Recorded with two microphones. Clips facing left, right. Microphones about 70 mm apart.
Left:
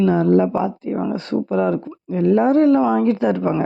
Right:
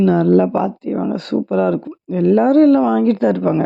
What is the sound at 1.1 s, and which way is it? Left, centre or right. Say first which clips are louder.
Speech: right 3 dB; right.